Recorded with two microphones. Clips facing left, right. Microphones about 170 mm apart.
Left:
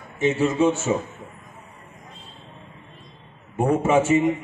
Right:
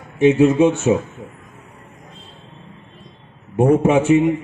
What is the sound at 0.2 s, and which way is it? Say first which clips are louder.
Speech: right 8 dB; 60° right (ahead or behind).